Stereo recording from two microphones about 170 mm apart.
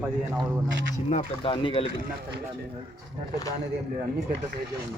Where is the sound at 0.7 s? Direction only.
90° right.